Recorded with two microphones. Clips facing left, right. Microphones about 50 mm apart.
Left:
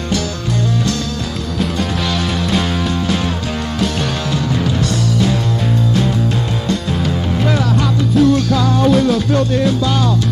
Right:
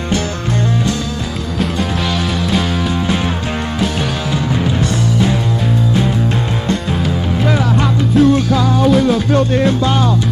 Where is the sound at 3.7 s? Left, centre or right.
Centre.